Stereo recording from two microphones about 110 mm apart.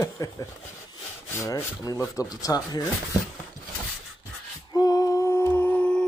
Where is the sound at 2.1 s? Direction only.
30° left (ahead or behind).